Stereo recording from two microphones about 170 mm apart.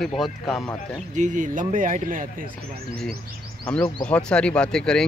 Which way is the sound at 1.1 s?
50° right (ahead or behind).